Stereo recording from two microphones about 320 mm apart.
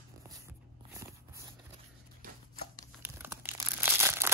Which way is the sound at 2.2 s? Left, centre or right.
Right.